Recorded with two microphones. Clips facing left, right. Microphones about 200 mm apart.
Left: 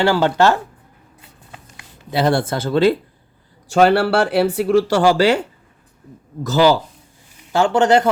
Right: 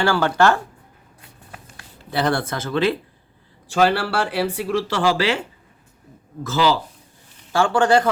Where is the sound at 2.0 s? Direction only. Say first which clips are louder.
Left 4 dB; 20° left (ahead or behind).